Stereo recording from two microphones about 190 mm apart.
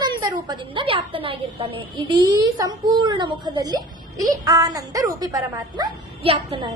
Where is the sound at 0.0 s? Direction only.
25° right (ahead or behind).